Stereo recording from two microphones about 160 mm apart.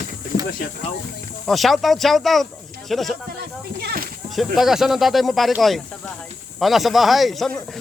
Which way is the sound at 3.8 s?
70° right (ahead or behind).